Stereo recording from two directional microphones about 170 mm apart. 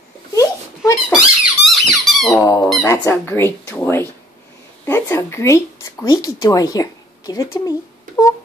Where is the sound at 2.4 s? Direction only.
15° left (ahead or behind).